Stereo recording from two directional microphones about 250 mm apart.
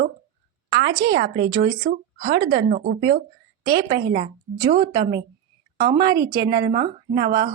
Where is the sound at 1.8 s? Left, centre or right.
Right.